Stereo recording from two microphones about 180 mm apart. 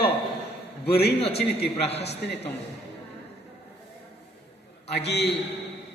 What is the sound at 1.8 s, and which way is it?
Speech, 35° left (ahead or behind).